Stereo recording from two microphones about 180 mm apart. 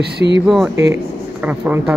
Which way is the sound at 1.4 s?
10° right (ahead or behind).